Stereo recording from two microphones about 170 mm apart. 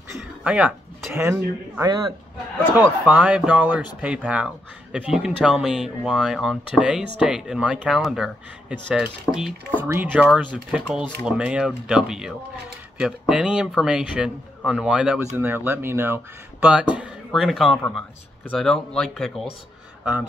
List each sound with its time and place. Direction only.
0.4 s speech: 5° right (ahead or behind)
1.3 s speech: 20° right (ahead or behind)
16.9 s speech: 5° right (ahead or behind)